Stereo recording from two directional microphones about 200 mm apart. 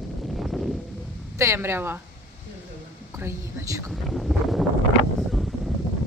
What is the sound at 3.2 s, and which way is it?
Speech, 15° right (ahead or behind).